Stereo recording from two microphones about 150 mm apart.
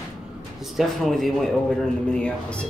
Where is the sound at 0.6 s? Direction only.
Centre (ahead or behind).